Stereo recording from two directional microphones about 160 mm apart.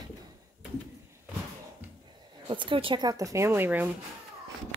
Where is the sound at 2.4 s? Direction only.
30° right (ahead or behind); by 3.9 s 10° right (ahead or behind).